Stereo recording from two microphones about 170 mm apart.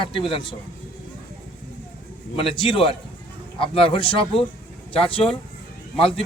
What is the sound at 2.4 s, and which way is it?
Speech, 30° left (ahead or behind).